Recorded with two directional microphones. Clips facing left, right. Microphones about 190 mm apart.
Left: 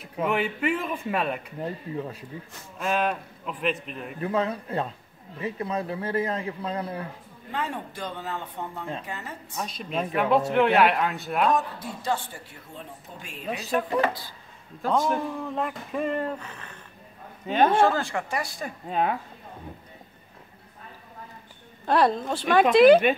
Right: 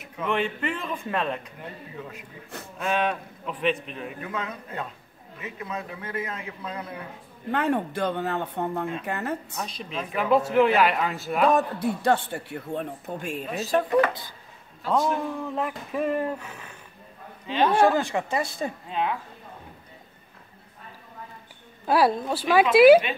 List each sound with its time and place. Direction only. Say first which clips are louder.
0.2 s a man's voice: left 1 dB; 10° left (ahead or behind)
1.6 s a man's voice: left 7 dB; 35° left (ahead or behind)
2.8 s speech: even; centre (ahead or behind)
4.2 s a man's voice: left 11 dB; 35° left (ahead or behind)
7.5 s a man's voice: right 7 dB; 60° right (ahead or behind)
9.6 s speech: left 3 dB; centre (ahead or behind)
11.5 s a man's voice: right 4 dB; 60° right (ahead or behind); by 13.8 s 40° right (ahead or behind)
14.9 s speech: even; centre (ahead or behind)
17.5 s speech: left 2 dB; 50° left (ahead or behind)
17.9 s speech: right 3 dB; 20° right (ahead or behind)
18.9 s speech: left 4 dB; 45° left (ahead or behind)
21.8 s speech: right 1 dB; 5° right (ahead or behind)